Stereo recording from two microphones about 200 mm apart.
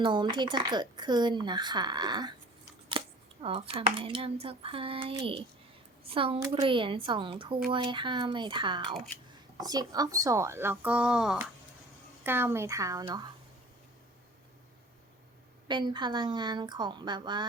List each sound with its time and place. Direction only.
0.0 s speech: 25° right (ahead or behind)
2.9 s scissors: 25° right (ahead or behind)
3.4 s speech: 25° right (ahead or behind)
15.6 s speech: 20° right (ahead or behind)